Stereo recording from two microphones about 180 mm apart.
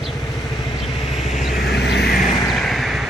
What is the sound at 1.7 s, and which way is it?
Vehicle, 70° left (ahead or behind).